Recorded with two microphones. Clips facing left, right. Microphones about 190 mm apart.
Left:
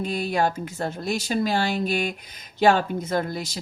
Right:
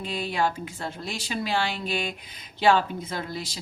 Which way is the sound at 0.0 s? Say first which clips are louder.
Left 3 dB; 45° left (ahead or behind).